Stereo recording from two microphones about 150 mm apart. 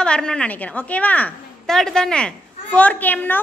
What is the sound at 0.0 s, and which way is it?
A woman's voice, 5° left (ahead or behind).